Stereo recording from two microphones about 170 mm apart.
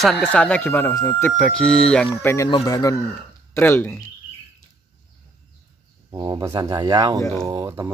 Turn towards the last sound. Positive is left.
turn(degrees=-20)  # may be behind; listen again after turning